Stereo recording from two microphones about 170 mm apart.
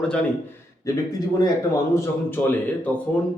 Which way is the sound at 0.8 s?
20° left (ahead or behind).